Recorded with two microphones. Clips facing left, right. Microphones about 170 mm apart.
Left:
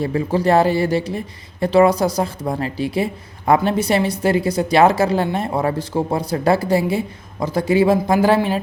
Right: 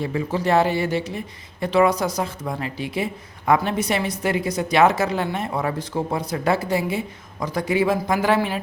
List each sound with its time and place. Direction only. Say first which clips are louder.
0.0 s speech: left 5 dB; 35° left (ahead or behind)